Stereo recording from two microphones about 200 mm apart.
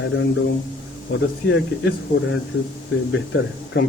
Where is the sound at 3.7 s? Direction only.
60° left (ahead or behind).